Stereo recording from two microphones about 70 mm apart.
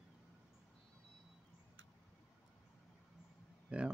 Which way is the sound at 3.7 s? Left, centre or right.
Centre.